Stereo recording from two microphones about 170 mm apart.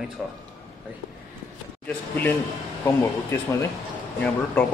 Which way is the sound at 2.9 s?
15° left (ahead or behind).